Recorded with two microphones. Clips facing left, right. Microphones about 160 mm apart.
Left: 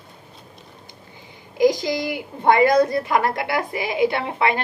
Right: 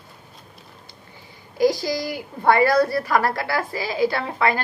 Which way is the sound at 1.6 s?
20° left (ahead or behind).